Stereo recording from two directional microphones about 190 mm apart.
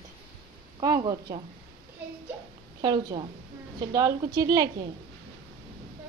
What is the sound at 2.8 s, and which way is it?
A woman's voice, 25° right (ahead or behind).